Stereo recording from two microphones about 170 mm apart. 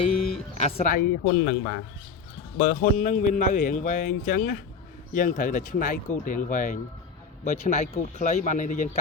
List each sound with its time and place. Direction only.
0.5 s a man's voice: 40° left (ahead or behind)